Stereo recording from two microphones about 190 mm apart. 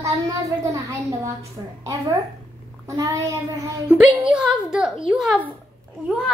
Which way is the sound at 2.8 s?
15° right (ahead or behind).